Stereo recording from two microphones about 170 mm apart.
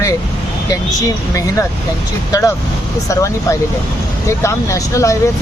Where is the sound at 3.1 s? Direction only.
15° left (ahead or behind).